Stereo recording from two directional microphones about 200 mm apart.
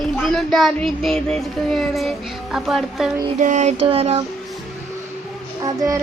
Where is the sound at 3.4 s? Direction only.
40° right (ahead or behind).